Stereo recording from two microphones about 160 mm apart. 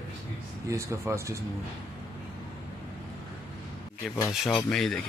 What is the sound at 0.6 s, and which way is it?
Speech, 15° right (ahead or behind).